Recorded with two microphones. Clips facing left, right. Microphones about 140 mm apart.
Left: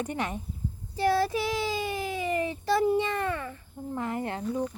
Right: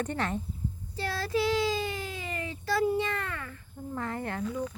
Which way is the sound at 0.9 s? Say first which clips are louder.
Left 5 dB; 15° left (ahead or behind).